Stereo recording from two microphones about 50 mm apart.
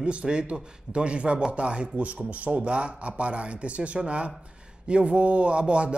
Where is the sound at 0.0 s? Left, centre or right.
Right.